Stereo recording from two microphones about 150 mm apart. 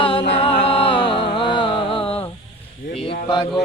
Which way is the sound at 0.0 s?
35° left (ahead or behind).